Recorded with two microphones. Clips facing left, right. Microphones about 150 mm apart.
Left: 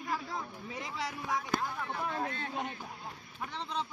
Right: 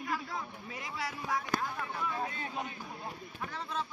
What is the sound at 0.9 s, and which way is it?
Speech, 20° left (ahead or behind).